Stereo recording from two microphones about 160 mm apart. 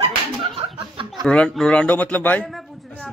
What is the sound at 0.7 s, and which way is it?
Chuckle, 30° right (ahead or behind).